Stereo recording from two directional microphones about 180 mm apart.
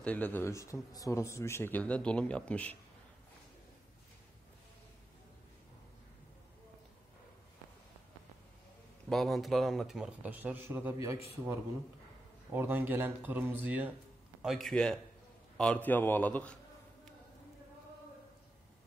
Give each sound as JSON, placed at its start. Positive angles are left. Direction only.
{"t": 0.0, "sound": "speech", "side_deg": 10}
{"t": 9.1, "sound": "speech", "side_deg": 0}
{"t": 12.5, "sound": "speech", "side_deg": -10}